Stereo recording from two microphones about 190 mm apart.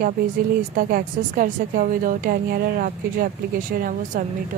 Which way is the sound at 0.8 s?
50° right (ahead or behind).